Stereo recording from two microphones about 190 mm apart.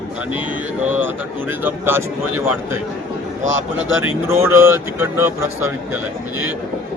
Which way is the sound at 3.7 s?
90° right.